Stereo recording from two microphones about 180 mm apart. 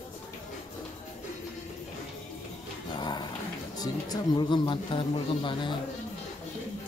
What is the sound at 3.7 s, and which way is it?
Speech, 20° left (ahead or behind).